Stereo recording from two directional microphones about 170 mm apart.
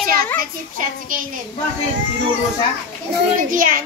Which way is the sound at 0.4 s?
50° right (ahead or behind).